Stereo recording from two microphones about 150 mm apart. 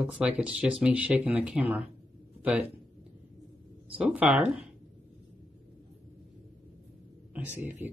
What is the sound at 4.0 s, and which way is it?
Speech, 10° right (ahead or behind).